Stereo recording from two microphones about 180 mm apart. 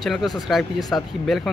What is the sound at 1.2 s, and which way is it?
Speech, centre (ahead or behind).